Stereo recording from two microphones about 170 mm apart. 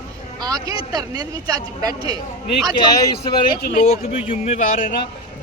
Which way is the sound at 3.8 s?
40° left (ahead or behind).